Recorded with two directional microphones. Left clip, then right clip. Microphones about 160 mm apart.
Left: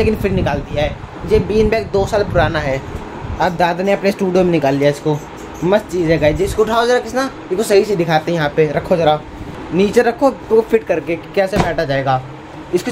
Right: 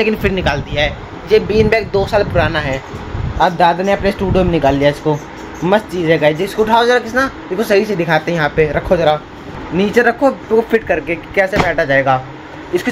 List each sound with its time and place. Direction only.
0.0 s speech: centre (ahead or behind)